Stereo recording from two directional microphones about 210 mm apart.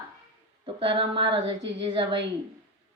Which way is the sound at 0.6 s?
25° right (ahead or behind).